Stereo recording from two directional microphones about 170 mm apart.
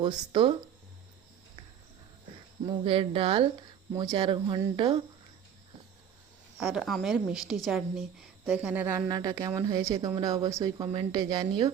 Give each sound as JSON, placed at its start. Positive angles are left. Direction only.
{"t": 0.0, "sound": "speech", "side_deg": -30}
{"t": 2.6, "sound": "speech", "side_deg": -30}
{"t": 6.6, "sound": "a woman's voice", "side_deg": -5}
{"t": 9.0, "sound": "speech", "side_deg": -25}